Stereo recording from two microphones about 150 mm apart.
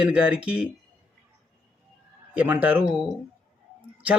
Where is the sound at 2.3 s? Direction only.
10° right (ahead or behind).